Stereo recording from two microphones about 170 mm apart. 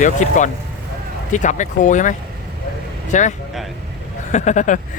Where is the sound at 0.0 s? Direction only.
45° left (ahead or behind).